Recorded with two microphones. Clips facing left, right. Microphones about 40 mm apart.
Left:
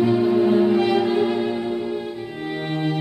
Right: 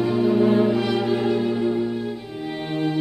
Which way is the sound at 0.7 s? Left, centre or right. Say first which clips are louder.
Left 3 dB; left.